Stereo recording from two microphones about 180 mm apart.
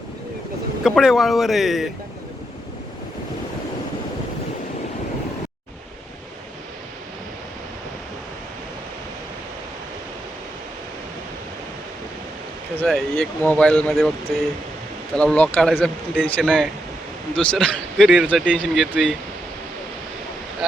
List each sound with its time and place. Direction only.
0.9 s speech: centre (ahead or behind)
12.9 s speech: 5° left (ahead or behind)